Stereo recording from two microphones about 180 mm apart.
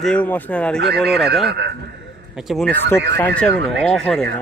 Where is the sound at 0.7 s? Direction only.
65° right (ahead or behind).